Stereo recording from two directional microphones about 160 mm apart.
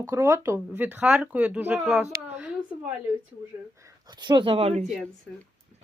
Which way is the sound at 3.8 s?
25° right (ahead or behind).